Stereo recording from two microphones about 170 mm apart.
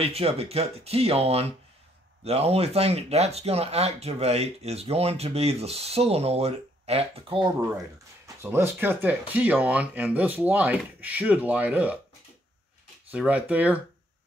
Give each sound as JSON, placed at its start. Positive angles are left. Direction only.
{"t": 0.0, "sound": "speech", "side_deg": -35}
{"t": 8.4, "sound": "speech", "side_deg": -15}
{"t": 13.1, "sound": "speech", "side_deg": -10}